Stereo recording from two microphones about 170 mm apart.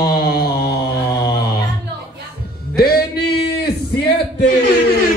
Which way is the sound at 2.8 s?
65° left (ahead or behind).